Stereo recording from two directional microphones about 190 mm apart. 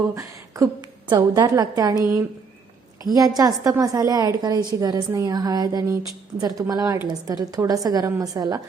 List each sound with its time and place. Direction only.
0.1 s a woman's voice: 15° right (ahead or behind)